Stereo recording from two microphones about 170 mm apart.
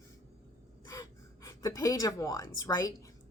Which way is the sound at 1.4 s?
20° left (ahead or behind).